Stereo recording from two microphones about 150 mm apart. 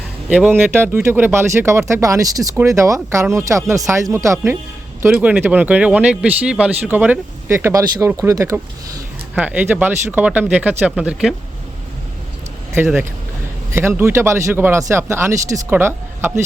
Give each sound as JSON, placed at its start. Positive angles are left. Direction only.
{"t": 0.3, "sound": "speech", "side_deg": -10}
{"t": 9.3, "sound": "speech", "side_deg": -10}
{"t": 12.7, "sound": "speech", "side_deg": -15}